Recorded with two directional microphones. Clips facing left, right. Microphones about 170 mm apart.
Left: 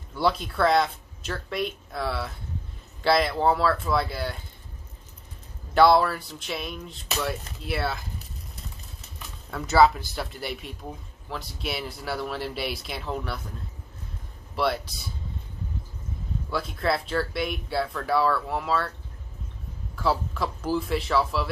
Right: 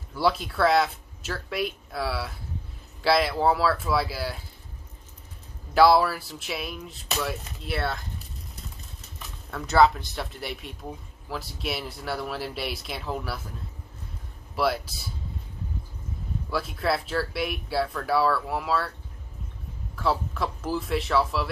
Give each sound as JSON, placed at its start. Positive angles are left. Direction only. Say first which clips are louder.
{"t": 0.1, "sound": "speech", "louder": "even", "side_deg": 0}
{"t": 5.8, "sound": "speech", "louder": "even", "side_deg": -5}
{"t": 9.5, "sound": "speech", "louder": "left 1 dB", "side_deg": 0}
{"t": 14.5, "sound": "speech", "louder": "even", "side_deg": 0}
{"t": 16.4, "sound": "speech", "louder": "even", "side_deg": 0}
{"t": 20.0, "sound": "speech", "louder": "left 1 dB", "side_deg": 0}